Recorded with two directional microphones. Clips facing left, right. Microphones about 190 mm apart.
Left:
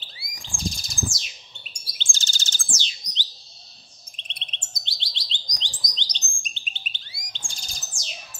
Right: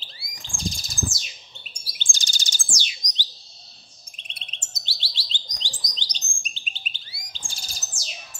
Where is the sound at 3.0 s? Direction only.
15° right (ahead or behind).